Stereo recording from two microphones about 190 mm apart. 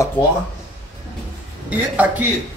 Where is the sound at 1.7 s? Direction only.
10° right (ahead or behind).